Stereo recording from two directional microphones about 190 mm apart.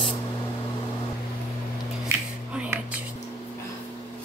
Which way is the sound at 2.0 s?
10° right (ahead or behind).